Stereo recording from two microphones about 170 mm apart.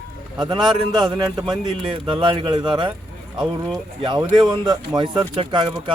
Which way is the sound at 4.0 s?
30° right (ahead or behind).